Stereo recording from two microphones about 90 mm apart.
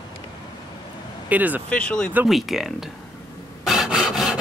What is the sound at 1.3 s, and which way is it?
Speech, 20° right (ahead or behind).